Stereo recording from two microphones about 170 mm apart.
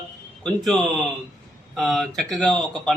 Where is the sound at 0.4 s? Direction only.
Centre (ahead or behind).